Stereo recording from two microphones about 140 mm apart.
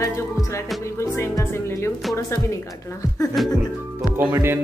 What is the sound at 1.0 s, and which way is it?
Speech, 20° left (ahead or behind).